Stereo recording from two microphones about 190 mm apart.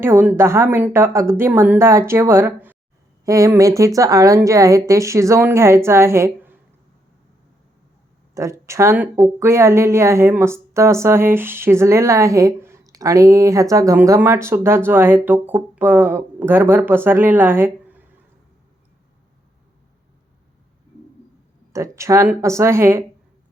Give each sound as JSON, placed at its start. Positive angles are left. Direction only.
{"t": 0.0, "sound": "speech", "side_deg": -10}
{"t": 8.4, "sound": "speech", "side_deg": -15}
{"t": 21.7, "sound": "speech", "side_deg": -15}